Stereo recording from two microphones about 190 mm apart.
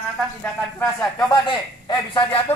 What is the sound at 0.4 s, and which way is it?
Speech, 10° left (ahead or behind).